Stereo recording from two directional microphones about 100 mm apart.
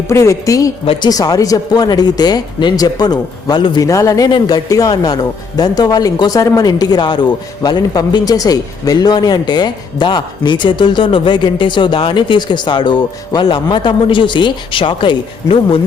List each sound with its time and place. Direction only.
0.1 s speech: 30° left (ahead or behind); by 15.8 s 60° left (ahead or behind)